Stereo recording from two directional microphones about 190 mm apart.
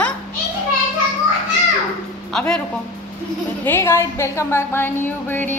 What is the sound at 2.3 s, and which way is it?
Speech, 5° left (ahead or behind).